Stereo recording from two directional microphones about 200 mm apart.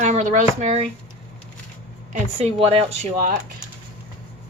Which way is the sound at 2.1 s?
30° right (ahead or behind).